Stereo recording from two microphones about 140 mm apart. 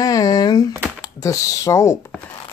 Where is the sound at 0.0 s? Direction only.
25° left (ahead or behind).